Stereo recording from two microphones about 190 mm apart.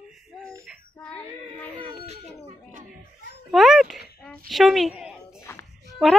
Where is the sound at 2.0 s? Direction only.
35° right (ahead or behind).